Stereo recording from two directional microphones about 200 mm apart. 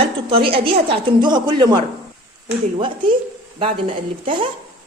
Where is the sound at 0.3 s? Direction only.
50° right (ahead or behind).